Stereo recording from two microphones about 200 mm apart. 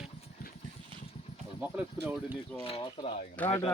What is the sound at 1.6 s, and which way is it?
Speech, 10° right (ahead or behind).